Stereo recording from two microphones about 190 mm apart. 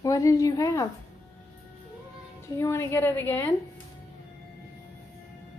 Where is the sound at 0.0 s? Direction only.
15° left (ahead or behind).